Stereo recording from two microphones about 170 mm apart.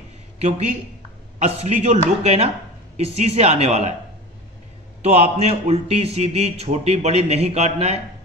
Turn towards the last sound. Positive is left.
turn(degrees=-40)  # may be behind; listen again after turning